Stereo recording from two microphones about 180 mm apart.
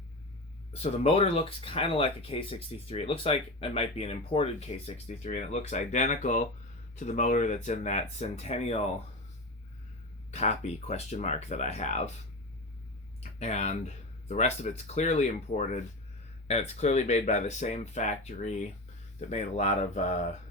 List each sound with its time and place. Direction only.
0.7 s speech: 35° left (ahead or behind)
10.3 s speech: 35° left (ahead or behind)
13.4 s speech: 40° left (ahead or behind)